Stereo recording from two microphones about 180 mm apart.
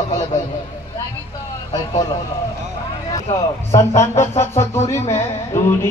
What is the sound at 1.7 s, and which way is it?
Speech, 25° left (ahead or behind).